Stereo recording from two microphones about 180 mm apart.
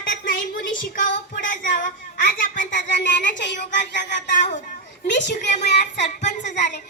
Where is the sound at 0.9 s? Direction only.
50° left (ahead or behind).